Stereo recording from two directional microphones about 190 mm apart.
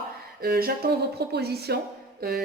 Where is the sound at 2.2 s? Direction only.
55° right (ahead or behind).